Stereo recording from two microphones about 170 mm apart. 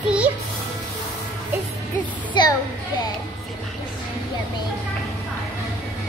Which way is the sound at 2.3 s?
25° left (ahead or behind).